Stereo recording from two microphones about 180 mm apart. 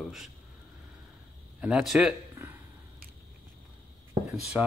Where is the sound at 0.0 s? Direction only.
Centre (ahead or behind).